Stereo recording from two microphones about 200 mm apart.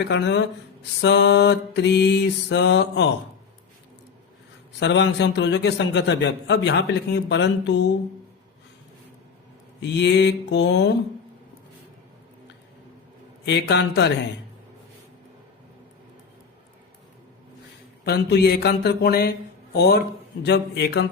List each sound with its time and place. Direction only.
0.0 s a man's voice: 60° left (ahead or behind)
4.8 s a man's voice: 60° left (ahead or behind)
9.8 s a man's voice: 60° left (ahead or behind)
13.4 s a man's voice: 55° left (ahead or behind)
18.0 s speech: 55° left (ahead or behind)
20.4 s a man's voice: 55° left (ahead or behind)